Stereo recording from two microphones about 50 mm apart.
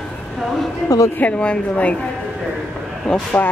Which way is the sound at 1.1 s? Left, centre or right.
Left.